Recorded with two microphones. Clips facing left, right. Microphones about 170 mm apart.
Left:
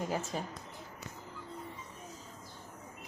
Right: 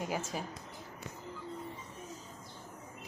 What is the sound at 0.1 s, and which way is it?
Speech, 10° right (ahead or behind).